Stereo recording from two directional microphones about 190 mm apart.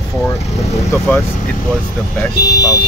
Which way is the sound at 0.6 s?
15° left (ahead or behind).